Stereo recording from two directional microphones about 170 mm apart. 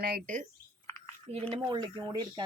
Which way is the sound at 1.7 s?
30° right (ahead or behind).